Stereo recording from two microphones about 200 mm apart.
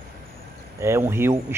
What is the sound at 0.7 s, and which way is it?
Speech, 15° right (ahead or behind).